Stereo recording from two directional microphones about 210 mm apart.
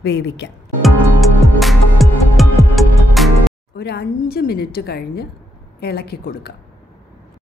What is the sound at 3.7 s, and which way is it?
A woman's voice, 50° left (ahead or behind).